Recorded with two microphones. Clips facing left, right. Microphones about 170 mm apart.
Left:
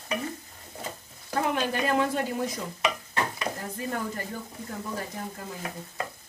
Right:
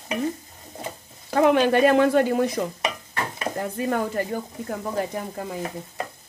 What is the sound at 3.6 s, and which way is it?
Stir, 75° right (ahead or behind).